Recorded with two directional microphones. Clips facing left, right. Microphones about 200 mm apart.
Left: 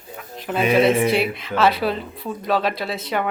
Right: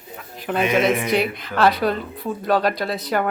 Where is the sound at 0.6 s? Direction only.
30° left (ahead or behind).